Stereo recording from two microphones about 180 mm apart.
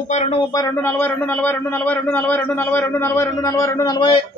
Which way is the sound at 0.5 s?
15° left (ahead or behind).